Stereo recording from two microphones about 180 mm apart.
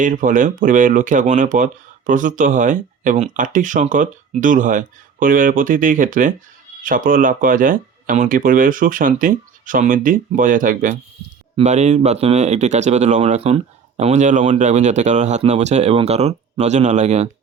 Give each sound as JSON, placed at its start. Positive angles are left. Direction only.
{"t": 0.0, "sound": "speech", "side_deg": -45}